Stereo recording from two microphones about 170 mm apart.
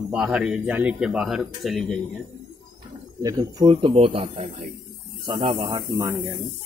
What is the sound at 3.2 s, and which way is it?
Speech, 25° right (ahead or behind).